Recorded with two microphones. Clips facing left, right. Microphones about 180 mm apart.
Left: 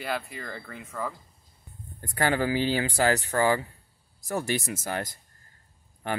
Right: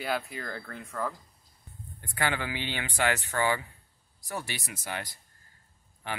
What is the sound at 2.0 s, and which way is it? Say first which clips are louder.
Speech: left 6 dB; 40° left (ahead or behind).